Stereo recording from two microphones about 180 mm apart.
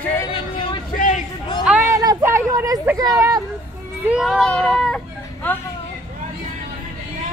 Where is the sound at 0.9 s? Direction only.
45° left (ahead or behind).